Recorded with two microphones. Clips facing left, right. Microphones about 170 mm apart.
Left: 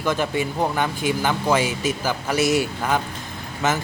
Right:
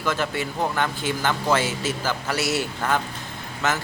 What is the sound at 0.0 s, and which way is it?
Speech, 15° left (ahead or behind).